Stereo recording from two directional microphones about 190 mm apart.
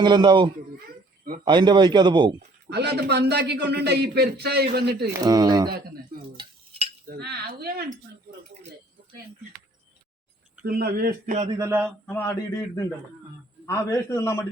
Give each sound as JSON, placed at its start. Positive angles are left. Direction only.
{"t": 0.0, "sound": "a man's voice", "side_deg": -25}
{"t": 2.6, "sound": "a man's voice", "side_deg": -60}
{"t": 5.2, "sound": "a man's voice", "side_deg": -20}
{"t": 6.3, "sound": "stir", "side_deg": -30}
{"t": 7.1, "sound": "a man's voice", "side_deg": -55}
{"t": 10.6, "sound": "speech", "side_deg": -55}
{"t": 11.5, "sound": "speech", "side_deg": -15}
{"t": 12.0, "sound": "a man's voice", "side_deg": 10}